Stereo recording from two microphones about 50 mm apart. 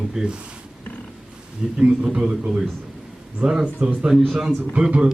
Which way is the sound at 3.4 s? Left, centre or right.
Centre.